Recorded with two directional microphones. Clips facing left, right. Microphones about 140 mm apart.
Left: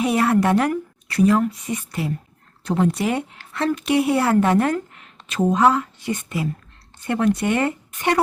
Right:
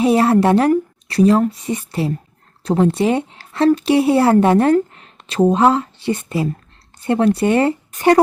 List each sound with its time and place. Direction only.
0.0 s a woman's voice: 30° right (ahead or behind)